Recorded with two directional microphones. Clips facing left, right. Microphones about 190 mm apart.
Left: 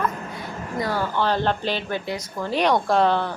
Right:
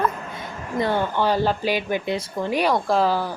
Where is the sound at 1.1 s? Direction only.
10° right (ahead or behind).